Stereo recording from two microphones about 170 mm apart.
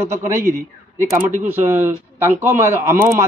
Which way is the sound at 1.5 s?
15° right (ahead or behind).